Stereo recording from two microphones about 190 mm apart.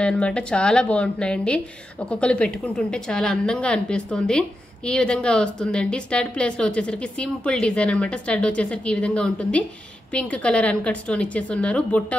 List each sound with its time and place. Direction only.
0.0 s a woman's voice: 5° left (ahead or behind)